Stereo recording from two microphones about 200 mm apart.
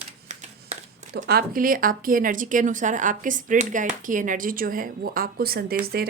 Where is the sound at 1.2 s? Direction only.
45° right (ahead or behind).